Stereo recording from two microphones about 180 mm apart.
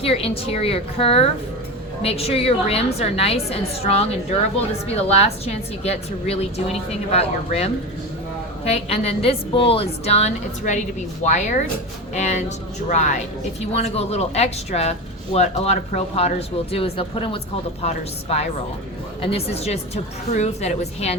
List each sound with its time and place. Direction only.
0.0 s a woman's voice: 30° left (ahead or behind)